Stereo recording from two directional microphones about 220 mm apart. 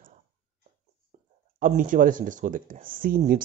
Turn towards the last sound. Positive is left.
turn(degrees=-40)  # may be behind; listen again after turning